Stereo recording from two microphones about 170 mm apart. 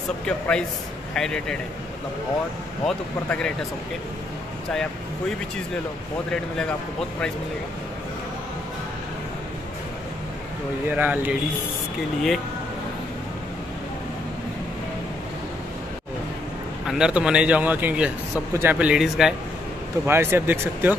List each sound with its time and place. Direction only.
0.3 s speech: 5° left (ahead or behind)
2.8 s speech: 5° left (ahead or behind)
10.9 s a man's voice: 10° right (ahead or behind)
16.8 s a man's voice: 5° right (ahead or behind)
20.1 s a man's voice: 15° right (ahead or behind)